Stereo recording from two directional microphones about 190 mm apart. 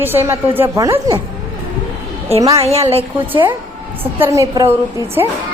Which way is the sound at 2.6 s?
35° right (ahead or behind).